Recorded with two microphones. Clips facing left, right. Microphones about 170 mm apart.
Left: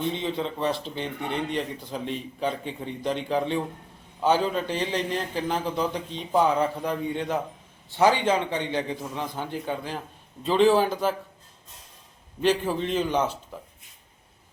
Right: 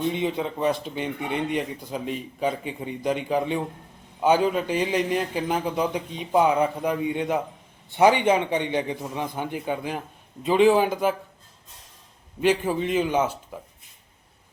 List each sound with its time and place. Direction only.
0.1 s a man's voice: 15° right (ahead or behind)
12.4 s a man's voice: 10° right (ahead or behind)